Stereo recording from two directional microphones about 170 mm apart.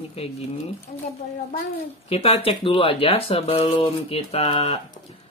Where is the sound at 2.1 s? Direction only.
30° left (ahead or behind).